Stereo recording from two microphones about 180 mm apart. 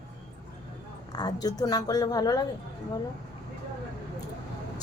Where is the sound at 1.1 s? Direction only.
20° left (ahead or behind).